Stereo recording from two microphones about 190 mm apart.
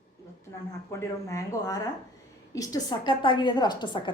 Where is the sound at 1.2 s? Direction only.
15° left (ahead or behind).